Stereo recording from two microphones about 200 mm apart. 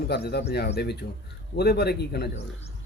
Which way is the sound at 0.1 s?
55° left (ahead or behind).